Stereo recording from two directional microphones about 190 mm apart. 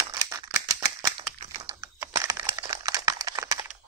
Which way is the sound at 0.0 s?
20° right (ahead or behind).